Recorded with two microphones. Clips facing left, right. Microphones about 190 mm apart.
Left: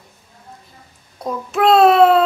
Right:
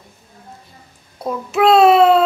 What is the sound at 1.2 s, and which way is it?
Speech, 5° right (ahead or behind).